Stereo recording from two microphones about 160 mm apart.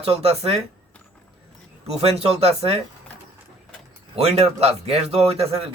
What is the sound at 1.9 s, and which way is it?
Speech, 40° right (ahead or behind).